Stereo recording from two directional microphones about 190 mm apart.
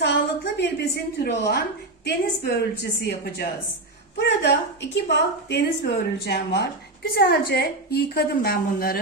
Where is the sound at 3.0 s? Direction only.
60° left (ahead or behind).